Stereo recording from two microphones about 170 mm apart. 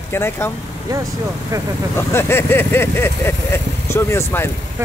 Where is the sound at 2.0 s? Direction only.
15° left (ahead or behind).